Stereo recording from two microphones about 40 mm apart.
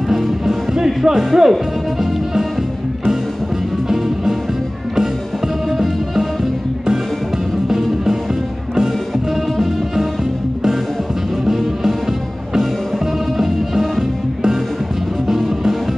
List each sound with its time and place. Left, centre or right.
0.1 s music: centre
3.9 s music: centre
5.7 s music: centre
11.4 s music: centre
15.2 s music: centre